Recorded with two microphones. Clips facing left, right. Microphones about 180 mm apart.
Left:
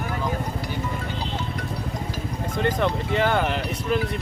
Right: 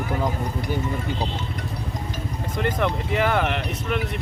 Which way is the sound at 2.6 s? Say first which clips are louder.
Left 1 dB; centre (ahead or behind).